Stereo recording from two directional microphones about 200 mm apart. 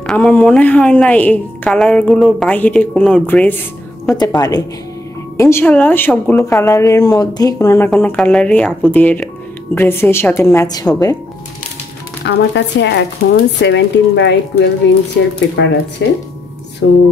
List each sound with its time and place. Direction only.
0.0 s a woman's voice: 5° left (ahead or behind)
12.3 s speech: 60° left (ahead or behind)